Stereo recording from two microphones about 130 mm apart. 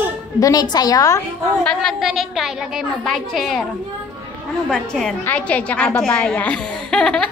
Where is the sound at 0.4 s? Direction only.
30° left (ahead or behind).